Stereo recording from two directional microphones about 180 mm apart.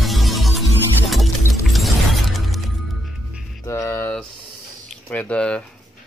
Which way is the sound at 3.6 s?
15° left (ahead or behind).